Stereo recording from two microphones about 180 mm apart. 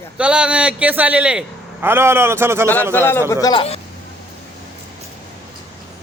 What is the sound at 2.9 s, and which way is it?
Speech, 15° left (ahead or behind).